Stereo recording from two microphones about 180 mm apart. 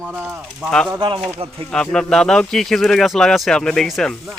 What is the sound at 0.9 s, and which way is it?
Speech, 25° right (ahead or behind).